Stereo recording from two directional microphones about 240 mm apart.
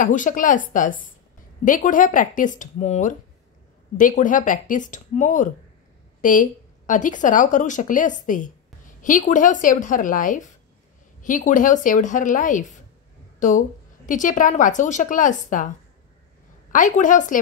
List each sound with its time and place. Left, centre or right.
0.0 s a woman's voice: left
16.7 s a woman's voice: left